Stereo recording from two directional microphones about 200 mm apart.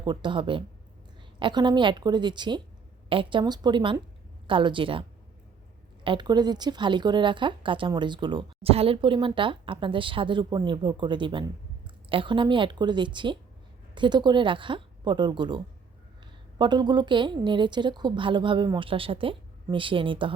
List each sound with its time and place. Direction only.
0.0 s a woman's voice: 25° right (ahead or behind)
6.1 s a woman's voice: 20° right (ahead or behind)